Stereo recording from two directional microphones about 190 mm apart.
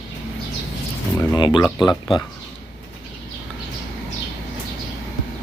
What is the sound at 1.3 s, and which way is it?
Speech, 25° left (ahead or behind).